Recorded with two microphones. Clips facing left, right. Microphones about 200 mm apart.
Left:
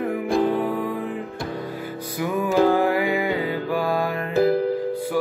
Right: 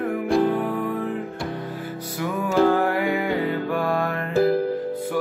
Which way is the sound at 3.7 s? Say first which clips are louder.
Left 1 dB; centre (ahead or behind).